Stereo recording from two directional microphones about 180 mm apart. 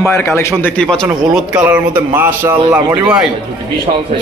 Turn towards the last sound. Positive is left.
turn(degrees=-10)  # may be behind; listen again after turning